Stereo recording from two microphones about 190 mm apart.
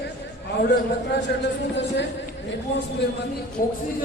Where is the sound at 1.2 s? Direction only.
65° left (ahead or behind).